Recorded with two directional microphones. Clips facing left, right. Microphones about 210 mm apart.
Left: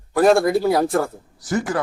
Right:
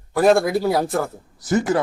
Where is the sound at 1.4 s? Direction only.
25° right (ahead or behind).